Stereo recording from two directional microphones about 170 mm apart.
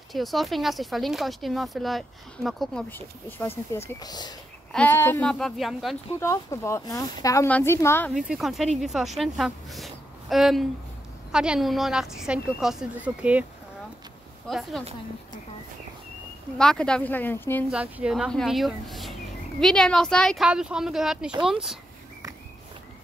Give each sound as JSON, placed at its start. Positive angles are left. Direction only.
{"t": 0.1, "sound": "speech", "side_deg": 0}
{"t": 2.9, "sound": "speech", "side_deg": 10}
{"t": 4.7, "sound": "speech", "side_deg": 10}
{"t": 6.1, "sound": "speech", "side_deg": 20}
{"t": 8.1, "sound": "speech", "side_deg": 0}
{"t": 14.5, "sound": "speech", "side_deg": 0}
{"t": 16.5, "sound": "speech", "side_deg": 5}
{"t": 17.6, "sound": "speech", "side_deg": -5}